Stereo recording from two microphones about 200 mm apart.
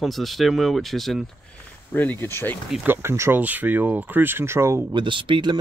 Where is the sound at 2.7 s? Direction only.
10° right (ahead or behind).